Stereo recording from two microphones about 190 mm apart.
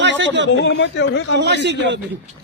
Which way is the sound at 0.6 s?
65° left (ahead or behind).